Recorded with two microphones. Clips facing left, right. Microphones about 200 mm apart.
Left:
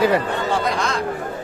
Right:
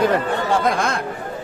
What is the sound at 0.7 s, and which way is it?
Speech, 50° right (ahead or behind).